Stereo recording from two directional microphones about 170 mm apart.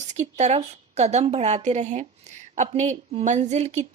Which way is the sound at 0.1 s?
40° right (ahead or behind).